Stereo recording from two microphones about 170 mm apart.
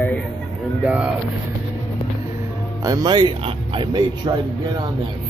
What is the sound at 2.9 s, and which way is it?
Speech, 25° right (ahead or behind).